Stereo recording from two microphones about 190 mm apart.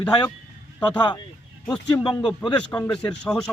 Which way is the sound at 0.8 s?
25° left (ahead or behind).